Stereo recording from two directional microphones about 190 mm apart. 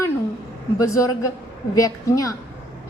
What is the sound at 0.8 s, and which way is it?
A woman's voice, 15° left (ahead or behind).